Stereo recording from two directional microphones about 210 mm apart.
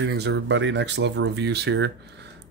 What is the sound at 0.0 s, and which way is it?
Speech, 55° right (ahead or behind).